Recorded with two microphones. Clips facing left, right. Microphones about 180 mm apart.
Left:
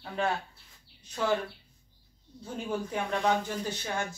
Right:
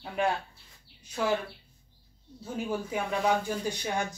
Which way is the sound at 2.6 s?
5° right (ahead or behind).